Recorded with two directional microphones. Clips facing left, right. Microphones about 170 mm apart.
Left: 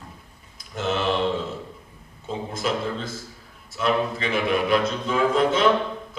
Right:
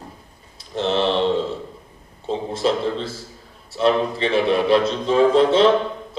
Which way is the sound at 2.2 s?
30° right (ahead or behind).